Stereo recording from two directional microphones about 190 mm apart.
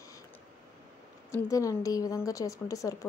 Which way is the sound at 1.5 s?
15° left (ahead or behind).